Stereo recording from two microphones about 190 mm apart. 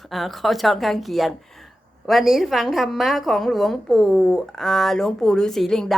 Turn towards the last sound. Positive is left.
turn(degrees=0)  # may be behind; listen again after turning